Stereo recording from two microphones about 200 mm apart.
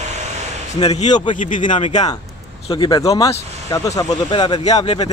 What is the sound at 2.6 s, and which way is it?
Speech, 25° left (ahead or behind).